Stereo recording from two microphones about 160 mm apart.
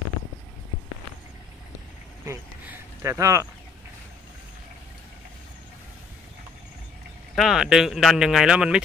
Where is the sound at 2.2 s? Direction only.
15° right (ahead or behind).